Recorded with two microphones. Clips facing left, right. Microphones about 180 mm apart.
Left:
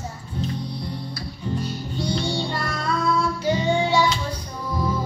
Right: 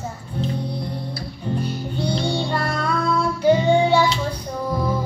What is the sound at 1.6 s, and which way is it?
Music, 60° right (ahead or behind).